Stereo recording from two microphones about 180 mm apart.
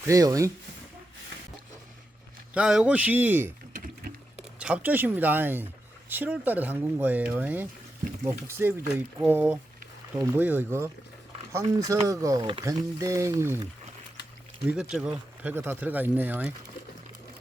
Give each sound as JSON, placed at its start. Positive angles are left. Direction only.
{"t": 0.0, "sound": "speech", "side_deg": -20}
{"t": 2.6, "sound": "speech", "side_deg": -5}
{"t": 3.7, "sound": "rowboat", "side_deg": -55}
{"t": 4.4, "sound": "speech", "side_deg": -5}
{"t": 14.8, "sound": "speech", "side_deg": -5}